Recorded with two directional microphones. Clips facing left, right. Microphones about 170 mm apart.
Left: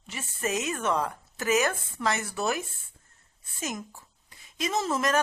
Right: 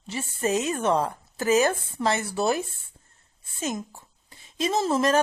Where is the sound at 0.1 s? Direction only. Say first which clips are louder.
Right 5 dB; 30° right (ahead or behind).